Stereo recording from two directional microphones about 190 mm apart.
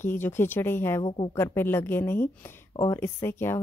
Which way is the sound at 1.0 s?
25° left (ahead or behind).